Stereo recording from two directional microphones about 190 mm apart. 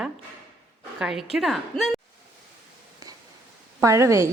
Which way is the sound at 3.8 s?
15° right (ahead or behind).